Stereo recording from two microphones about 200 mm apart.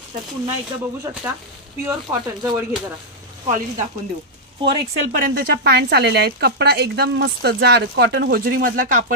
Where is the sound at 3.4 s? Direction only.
35° right (ahead or behind).